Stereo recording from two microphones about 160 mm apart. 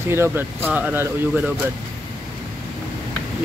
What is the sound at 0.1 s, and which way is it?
Speech, 15° right (ahead or behind).